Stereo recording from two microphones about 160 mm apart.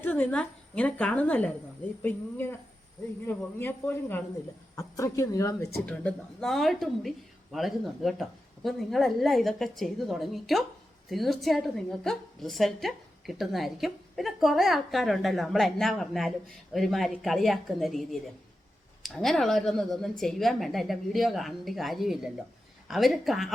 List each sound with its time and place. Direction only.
0.0 s a woman's voice: 10° left (ahead or behind)